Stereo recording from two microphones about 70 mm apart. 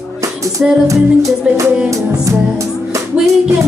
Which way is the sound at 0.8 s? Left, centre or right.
Right.